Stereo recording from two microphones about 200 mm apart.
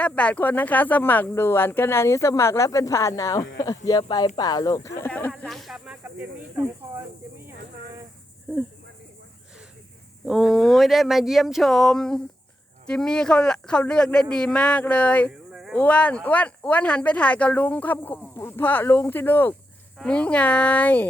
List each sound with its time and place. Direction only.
0.0 s speech: 5° left (ahead or behind)
6.6 s cricket: 10° right (ahead or behind)
10.2 s speech: centre (ahead or behind)